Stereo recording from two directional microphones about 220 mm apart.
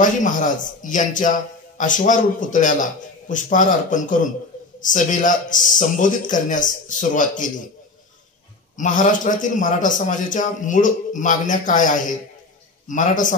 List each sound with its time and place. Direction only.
0.0 s a man's voice: 35° left (ahead or behind)
8.7 s a man's voice: 35° left (ahead or behind)